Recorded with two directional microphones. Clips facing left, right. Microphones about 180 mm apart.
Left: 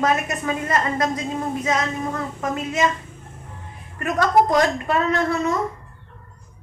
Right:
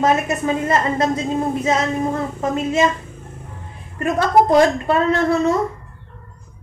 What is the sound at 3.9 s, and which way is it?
A woman's voice, 30° right (ahead or behind).